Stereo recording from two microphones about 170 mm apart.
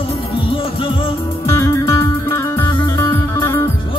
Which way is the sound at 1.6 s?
15° left (ahead or behind).